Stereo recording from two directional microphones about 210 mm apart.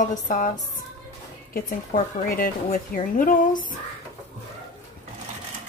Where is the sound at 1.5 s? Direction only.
45° left (ahead or behind).